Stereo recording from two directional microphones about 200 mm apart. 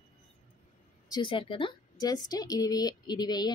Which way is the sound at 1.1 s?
25° left (ahead or behind).